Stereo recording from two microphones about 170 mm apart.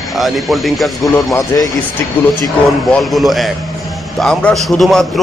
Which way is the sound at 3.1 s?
Centre (ahead or behind).